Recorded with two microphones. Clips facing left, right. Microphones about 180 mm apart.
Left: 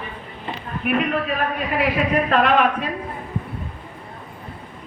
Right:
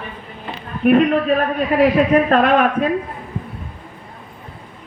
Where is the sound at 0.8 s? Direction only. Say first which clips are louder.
Right 9 dB; 40° right (ahead or behind).